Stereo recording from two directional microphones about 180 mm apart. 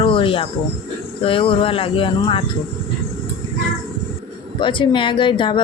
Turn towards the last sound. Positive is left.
turn(degrees=25)  # may be behind; listen again after turning